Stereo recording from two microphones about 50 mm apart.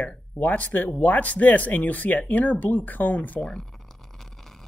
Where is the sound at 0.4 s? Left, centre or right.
Left.